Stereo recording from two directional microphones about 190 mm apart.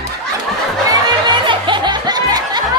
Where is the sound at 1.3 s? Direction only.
25° right (ahead or behind).